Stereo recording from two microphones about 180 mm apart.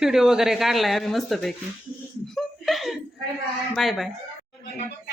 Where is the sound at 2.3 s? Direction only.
Centre (ahead or behind).